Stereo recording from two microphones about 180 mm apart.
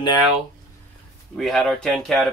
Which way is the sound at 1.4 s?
Centre (ahead or behind).